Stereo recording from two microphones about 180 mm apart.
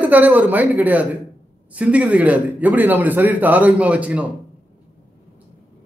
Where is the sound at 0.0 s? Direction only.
10° right (ahead or behind).